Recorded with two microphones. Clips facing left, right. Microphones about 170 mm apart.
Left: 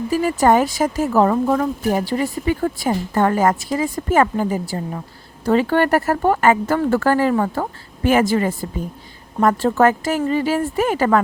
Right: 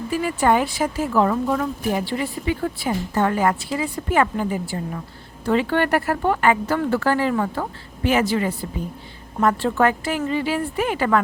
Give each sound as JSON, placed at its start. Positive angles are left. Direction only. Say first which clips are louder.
{"t": 0.1, "sound": "speech", "louder": "left 4 dB", "side_deg": 40}